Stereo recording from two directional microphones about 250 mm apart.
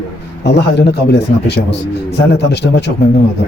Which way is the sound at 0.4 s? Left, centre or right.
Left.